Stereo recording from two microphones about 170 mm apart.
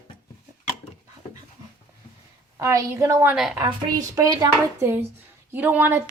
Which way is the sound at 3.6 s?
20° right (ahead or behind).